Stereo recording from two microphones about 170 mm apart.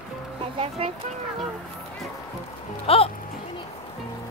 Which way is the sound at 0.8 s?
30° right (ahead or behind).